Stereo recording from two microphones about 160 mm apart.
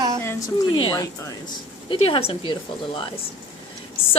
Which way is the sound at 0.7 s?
30° left (ahead or behind).